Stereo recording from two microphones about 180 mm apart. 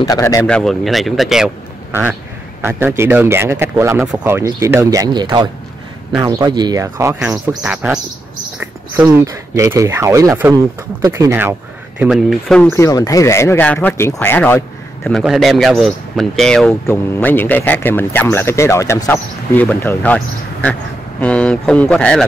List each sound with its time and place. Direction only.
0.0 s a man's voice: 20° left (ahead or behind); by 11.5 s 15° right (ahead or behind)
12.0 s a man's voice: centre (ahead or behind)
12.7 s a man's voice: 20° left (ahead or behind)
15.0 s a man's voice: centre (ahead or behind)
16.8 s a man's voice: 15° left (ahead or behind)